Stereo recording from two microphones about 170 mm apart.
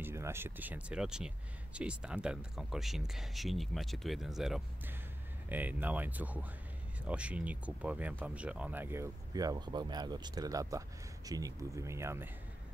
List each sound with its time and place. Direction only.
0.0 s speech: 15° right (ahead or behind)